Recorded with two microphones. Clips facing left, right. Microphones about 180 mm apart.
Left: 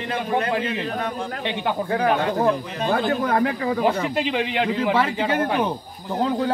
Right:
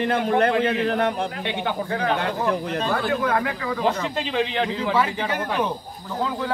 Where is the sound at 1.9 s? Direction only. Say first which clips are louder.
Left 5 dB; 35° left (ahead or behind).